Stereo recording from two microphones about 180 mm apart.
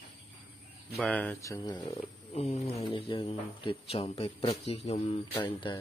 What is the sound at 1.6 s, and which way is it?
Speech, 30° left (ahead or behind).